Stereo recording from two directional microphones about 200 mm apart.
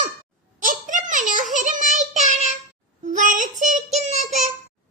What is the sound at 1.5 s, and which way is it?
Child singing, 40° right (ahead or behind).